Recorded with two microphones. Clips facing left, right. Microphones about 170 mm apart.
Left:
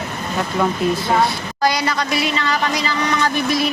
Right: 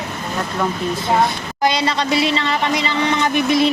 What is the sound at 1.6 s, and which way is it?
Speech, 25° right (ahead or behind).